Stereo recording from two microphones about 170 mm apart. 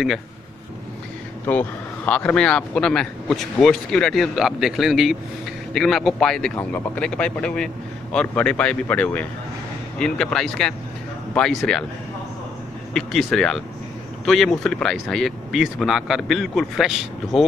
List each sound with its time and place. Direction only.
1.5 s speech: 10° left (ahead or behind)
12.9 s speech: centre (ahead or behind)